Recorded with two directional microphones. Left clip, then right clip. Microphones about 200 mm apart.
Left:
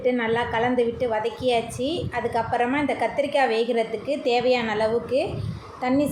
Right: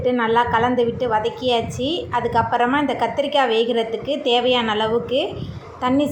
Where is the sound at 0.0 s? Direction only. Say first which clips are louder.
Right 5 dB; 15° right (ahead or behind).